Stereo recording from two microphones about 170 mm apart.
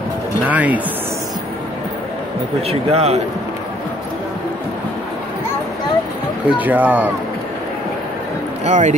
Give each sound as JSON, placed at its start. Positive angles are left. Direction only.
{"t": 0.5, "sound": "speech", "side_deg": -10}
{"t": 2.7, "sound": "speech", "side_deg": -40}
{"t": 6.6, "sound": "speech", "side_deg": -10}
{"t": 8.6, "sound": "speech", "side_deg": -45}